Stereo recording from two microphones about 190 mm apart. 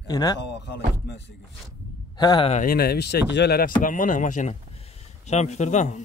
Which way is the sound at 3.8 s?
45° left (ahead or behind).